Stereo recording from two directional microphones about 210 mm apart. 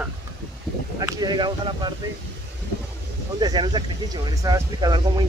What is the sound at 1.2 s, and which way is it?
Speech, 20° right (ahead or behind).